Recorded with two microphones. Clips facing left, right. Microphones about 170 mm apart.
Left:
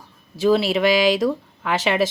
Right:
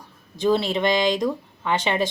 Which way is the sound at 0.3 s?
5° left (ahead or behind).